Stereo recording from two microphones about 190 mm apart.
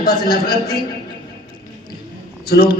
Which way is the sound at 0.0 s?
50° left (ahead or behind).